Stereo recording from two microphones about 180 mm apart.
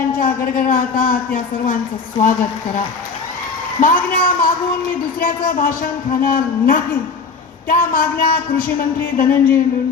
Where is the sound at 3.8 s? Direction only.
50° left (ahead or behind).